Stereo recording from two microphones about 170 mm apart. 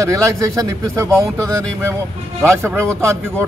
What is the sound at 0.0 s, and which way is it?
A man's voice, 20° right (ahead or behind).